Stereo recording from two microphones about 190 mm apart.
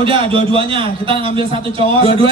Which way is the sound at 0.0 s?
30° right (ahead or behind).